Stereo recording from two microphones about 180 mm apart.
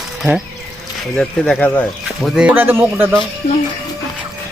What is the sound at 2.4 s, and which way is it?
Speech, 10° right (ahead or behind).